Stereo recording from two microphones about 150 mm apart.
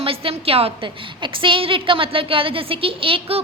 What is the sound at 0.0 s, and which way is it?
A woman's voice, 40° right (ahead or behind).